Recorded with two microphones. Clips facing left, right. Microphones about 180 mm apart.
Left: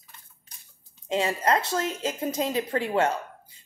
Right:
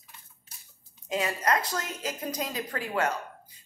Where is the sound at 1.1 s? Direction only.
25° left (ahead or behind).